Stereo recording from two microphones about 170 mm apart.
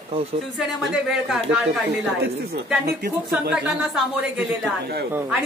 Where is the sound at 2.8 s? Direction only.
70° right (ahead or behind).